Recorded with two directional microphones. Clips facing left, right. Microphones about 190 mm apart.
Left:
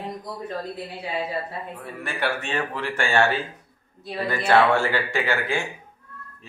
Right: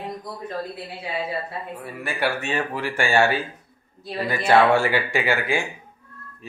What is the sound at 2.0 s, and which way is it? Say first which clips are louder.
Speech: right 2 dB; 10° right (ahead or behind).